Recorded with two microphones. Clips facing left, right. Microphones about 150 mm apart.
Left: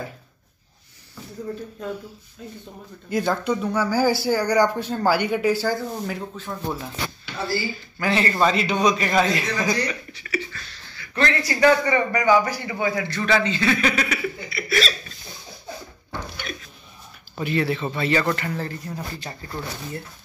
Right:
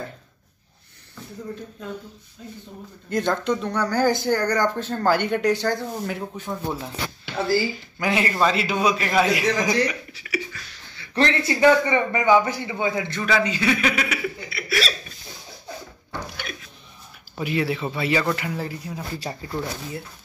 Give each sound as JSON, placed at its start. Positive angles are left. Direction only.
{"t": 3.1, "sound": "speech", "side_deg": 5}
{"t": 6.3, "sound": "speech", "side_deg": -15}
{"t": 8.0, "sound": "a man's voice", "side_deg": -10}
{"t": 10.1, "sound": "a sound", "side_deg": -10}
{"t": 11.0, "sound": "a man's voice", "side_deg": -25}
{"t": 13.2, "sound": "speech", "side_deg": -10}
{"t": 16.4, "sound": "speech", "side_deg": -5}